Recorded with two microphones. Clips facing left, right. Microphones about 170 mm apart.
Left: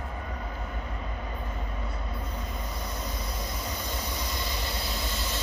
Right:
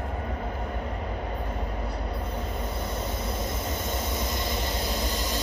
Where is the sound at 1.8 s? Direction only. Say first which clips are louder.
Right 4 dB; 30° right (ahead or behind).